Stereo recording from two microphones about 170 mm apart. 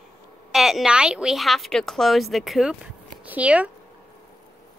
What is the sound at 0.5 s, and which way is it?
Speech, centre (ahead or behind).